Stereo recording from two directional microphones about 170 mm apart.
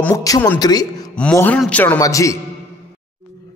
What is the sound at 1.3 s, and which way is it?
A man's voice, 10° left (ahead or behind).